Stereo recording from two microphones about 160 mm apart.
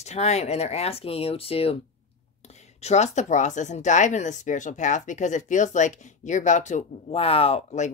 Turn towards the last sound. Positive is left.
turn(degrees=40)  # may be behind; listen again after turning